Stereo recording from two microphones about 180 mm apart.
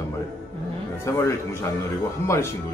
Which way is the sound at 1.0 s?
15° left (ahead or behind).